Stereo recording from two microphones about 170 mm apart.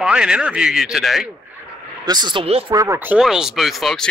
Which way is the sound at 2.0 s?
25° right (ahead or behind).